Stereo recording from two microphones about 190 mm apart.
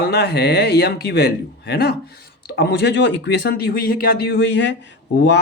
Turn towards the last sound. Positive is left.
turn(degrees=65)  # may be behind; listen again after turning